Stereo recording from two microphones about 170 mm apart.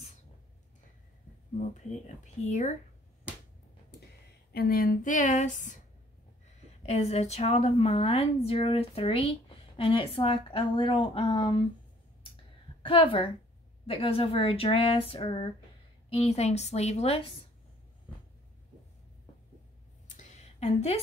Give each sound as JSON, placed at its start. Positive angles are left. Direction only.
{"t": 1.6, "sound": "a woman's voice", "side_deg": 45}
{"t": 4.5, "sound": "a woman's voice", "side_deg": 65}
{"t": 6.9, "sound": "a woman's voice", "side_deg": 40}
{"t": 12.8, "sound": "a woman's voice", "side_deg": 30}
{"t": 20.1, "sound": "a sound", "side_deg": 45}